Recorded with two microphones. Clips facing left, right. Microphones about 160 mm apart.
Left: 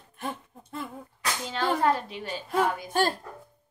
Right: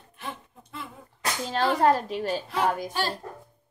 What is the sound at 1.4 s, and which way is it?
Speech, 40° right (ahead or behind).